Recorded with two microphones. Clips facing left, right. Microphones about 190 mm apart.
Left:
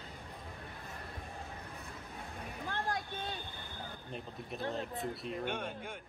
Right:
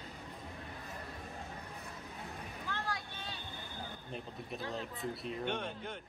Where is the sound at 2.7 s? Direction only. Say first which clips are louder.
Left 4 dB; 50° left (ahead or behind).